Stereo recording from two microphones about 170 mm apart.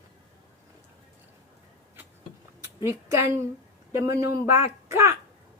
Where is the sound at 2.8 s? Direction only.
15° right (ahead or behind).